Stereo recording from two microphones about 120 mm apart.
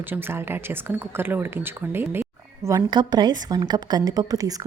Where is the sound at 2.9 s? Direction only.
35° right (ahead or behind).